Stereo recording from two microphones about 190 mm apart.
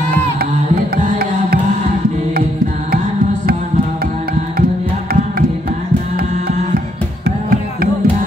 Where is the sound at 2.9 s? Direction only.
50° right (ahead or behind).